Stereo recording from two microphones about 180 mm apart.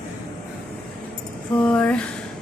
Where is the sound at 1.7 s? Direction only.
5° left (ahead or behind).